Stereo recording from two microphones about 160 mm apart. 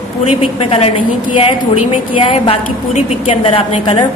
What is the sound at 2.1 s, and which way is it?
A woman's voice, 35° left (ahead or behind).